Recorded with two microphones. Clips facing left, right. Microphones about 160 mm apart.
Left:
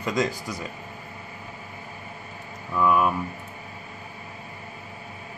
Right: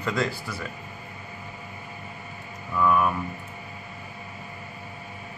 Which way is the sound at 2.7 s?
15° left (ahead or behind).